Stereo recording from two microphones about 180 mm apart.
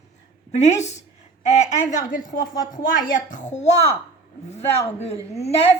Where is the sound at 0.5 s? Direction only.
40° left (ahead or behind).